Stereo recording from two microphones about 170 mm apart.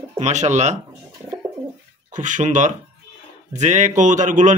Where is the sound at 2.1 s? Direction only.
45° right (ahead or behind).